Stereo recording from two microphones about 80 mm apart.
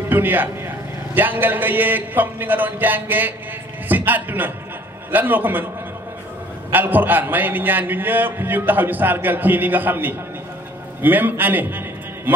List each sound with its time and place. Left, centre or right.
0.1 s a man's voice: right
6.7 s a man's voice: right